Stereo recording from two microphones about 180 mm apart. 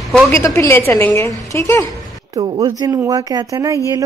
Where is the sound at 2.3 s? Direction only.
25° right (ahead or behind).